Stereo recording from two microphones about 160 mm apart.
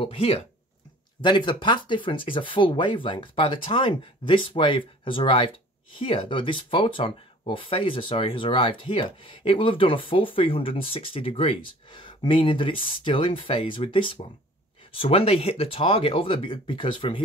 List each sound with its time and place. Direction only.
0.0 s speech: 35° left (ahead or behind)